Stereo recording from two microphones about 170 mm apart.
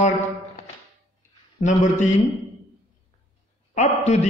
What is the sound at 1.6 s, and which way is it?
Speech, 45° left (ahead or behind).